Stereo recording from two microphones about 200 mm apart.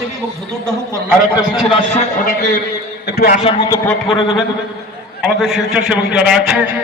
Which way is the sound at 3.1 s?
50° left (ahead or behind).